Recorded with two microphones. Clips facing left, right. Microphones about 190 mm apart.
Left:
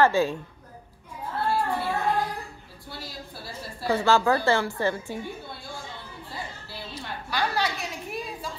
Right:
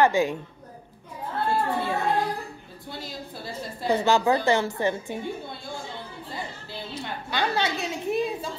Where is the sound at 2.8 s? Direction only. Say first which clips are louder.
Right 3 dB; 20° right (ahead or behind).